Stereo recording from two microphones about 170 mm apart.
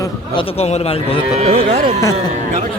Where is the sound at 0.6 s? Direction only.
40° left (ahead or behind).